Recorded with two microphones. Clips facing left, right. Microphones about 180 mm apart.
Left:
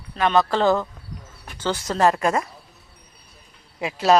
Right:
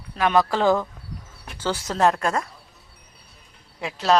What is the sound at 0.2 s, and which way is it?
Speech, 10° right (ahead or behind).